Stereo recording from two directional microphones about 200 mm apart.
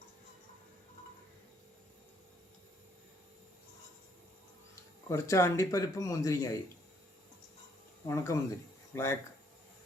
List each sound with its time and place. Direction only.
4.7 s speech: 15° left (ahead or behind)
8.0 s speech: 15° left (ahead or behind)